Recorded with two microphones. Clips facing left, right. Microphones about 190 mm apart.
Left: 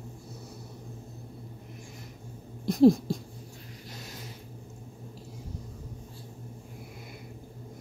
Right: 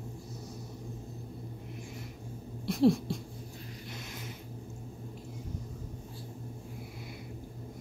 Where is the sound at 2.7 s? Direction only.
40° left (ahead or behind).